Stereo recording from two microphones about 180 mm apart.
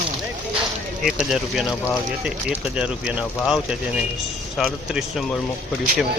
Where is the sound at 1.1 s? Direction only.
Centre (ahead or behind).